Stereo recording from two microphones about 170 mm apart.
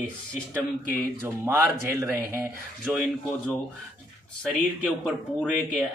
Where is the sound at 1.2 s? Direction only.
15° right (ahead or behind).